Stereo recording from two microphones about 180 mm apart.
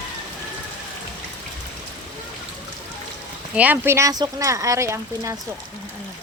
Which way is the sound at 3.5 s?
10° right (ahead or behind).